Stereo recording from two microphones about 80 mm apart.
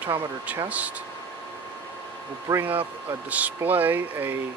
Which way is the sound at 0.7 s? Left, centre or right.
Centre.